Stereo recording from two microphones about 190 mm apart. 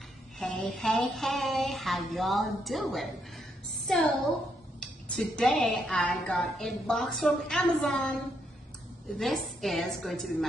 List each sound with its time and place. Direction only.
0.4 s a woman's voice: 5° left (ahead or behind)
9.2 s a woman's voice: centre (ahead or behind)